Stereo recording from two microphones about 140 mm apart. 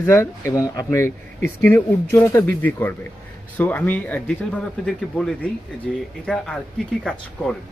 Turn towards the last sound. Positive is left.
turn(degrees=5)  # may be behind; listen again after turning